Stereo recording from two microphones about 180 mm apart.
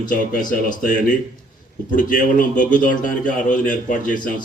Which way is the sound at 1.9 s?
50° left (ahead or behind).